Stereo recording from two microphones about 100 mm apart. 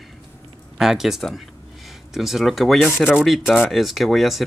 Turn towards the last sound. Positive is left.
turn(degrees=0)  # may be behind; listen again after turning